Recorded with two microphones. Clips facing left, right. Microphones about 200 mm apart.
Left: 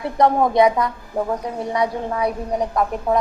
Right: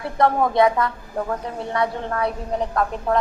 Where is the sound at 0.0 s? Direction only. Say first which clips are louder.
Left 2 dB; 20° left (ahead or behind).